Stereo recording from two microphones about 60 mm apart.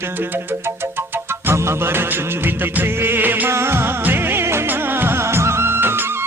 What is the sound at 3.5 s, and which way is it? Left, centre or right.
Music, right.